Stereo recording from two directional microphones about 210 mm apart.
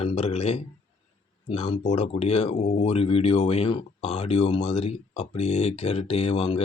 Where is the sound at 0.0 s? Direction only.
30° left (ahead or behind).